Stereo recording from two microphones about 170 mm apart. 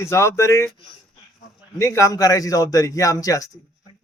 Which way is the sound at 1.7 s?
15° left (ahead or behind).